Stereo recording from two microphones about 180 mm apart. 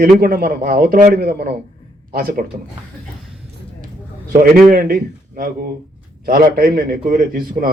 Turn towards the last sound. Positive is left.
turn(degrees=-55)  # may be behind; listen again after turning